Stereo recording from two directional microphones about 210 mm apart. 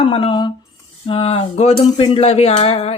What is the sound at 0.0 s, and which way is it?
Speech, 25° left (ahead or behind).